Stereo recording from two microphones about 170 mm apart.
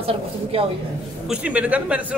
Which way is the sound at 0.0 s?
35° right (ahead or behind).